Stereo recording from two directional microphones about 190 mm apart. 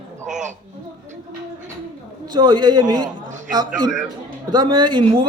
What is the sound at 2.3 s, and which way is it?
Speech, 20° right (ahead or behind).